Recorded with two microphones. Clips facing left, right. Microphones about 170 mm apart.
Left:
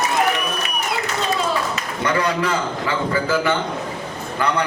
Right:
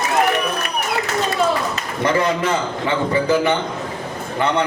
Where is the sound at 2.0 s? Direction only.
25° right (ahead or behind).